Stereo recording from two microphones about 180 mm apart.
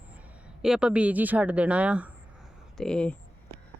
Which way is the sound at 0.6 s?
5° right (ahead or behind).